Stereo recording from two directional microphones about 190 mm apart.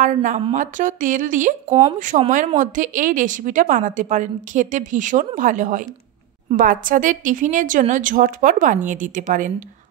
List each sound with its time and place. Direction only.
0.0 s a woman's voice: 40° right (ahead or behind)